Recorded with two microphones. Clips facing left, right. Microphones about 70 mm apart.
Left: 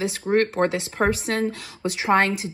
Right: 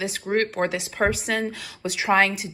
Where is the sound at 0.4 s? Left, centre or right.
Left.